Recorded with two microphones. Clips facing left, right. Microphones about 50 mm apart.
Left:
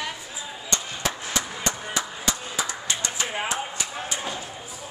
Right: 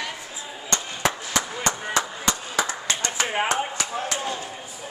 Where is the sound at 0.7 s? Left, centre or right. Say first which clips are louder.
Right 4 dB; right.